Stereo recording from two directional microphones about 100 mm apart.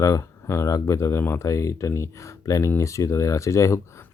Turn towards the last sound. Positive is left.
turn(degrees=30)  # may be behind; listen again after turning